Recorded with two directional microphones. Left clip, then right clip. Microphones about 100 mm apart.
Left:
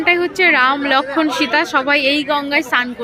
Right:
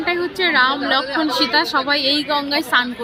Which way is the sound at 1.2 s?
25° left (ahead or behind).